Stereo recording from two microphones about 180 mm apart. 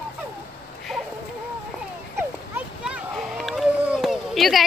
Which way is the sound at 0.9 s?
Centre (ahead or behind).